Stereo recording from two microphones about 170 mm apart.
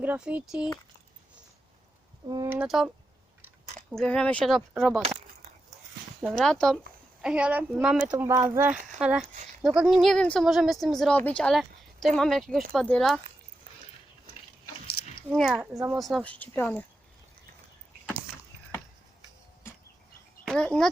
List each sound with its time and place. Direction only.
0.0 s speech: 10° right (ahead or behind)
2.2 s speech: 25° right (ahead or behind)
2.5 s speech: 5° right (ahead or behind)
3.9 s speech: 5° left (ahead or behind)
6.2 s speech: centre (ahead or behind)
15.4 s speech: centre (ahead or behind)
20.4 s speech: 5° left (ahead or behind)